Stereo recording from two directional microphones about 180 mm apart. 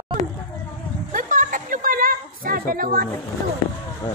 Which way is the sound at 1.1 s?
45° right (ahead or behind).